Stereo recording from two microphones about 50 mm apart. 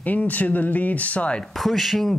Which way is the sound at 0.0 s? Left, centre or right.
Left.